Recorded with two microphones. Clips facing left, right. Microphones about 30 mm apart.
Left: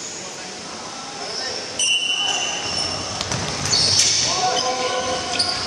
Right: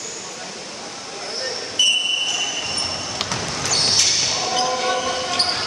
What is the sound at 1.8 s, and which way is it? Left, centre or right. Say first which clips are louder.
Basketball bounce: right 4 dB; right.